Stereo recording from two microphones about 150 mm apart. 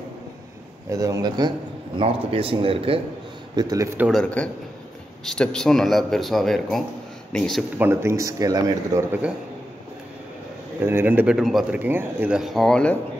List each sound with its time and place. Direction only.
0.8 s a man's voice: 20° right (ahead or behind)
2.0 s speech: 35° right (ahead or behind)
3.5 s a man's voice: 25° right (ahead or behind)
4.1 s a man's voice: 5° left (ahead or behind)
7.8 s speech: 15° right (ahead or behind)
10.8 s speech: 15° right (ahead or behind)
11.3 s speech: centre (ahead or behind)
11.8 s speech: 15° right (ahead or behind); by 12.9 s 5° left (ahead or behind)